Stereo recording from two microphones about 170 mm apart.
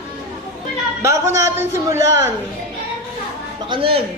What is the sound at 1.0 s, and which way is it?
A woman's voice, 15° right (ahead or behind).